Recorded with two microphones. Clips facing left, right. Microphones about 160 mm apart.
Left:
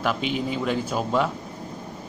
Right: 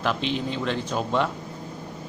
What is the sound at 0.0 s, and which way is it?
Speech, 5° left (ahead or behind).